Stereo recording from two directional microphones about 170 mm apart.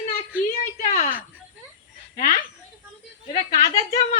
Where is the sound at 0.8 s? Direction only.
45° left (ahead or behind).